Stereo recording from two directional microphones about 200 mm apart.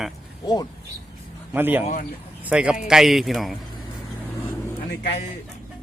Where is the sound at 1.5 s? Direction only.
10° right (ahead or behind).